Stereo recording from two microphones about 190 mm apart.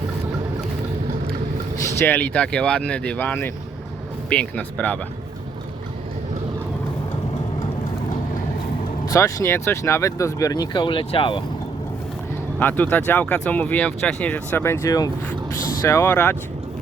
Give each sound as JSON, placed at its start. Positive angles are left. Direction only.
{"t": 2.0, "sound": "speech", "side_deg": 10}
{"t": 9.0, "sound": "speech", "side_deg": 15}
{"t": 12.5, "sound": "speech", "side_deg": 10}